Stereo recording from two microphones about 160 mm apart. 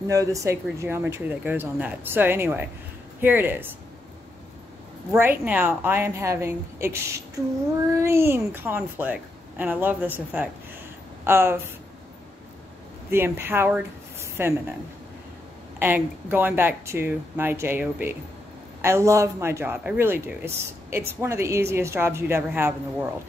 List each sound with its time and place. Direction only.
0.1 s speech: 20° right (ahead or behind)
5.1 s speech: 15° right (ahead or behind)
13.1 s speech: 15° right (ahead or behind)
15.8 s speech: 10° right (ahead or behind)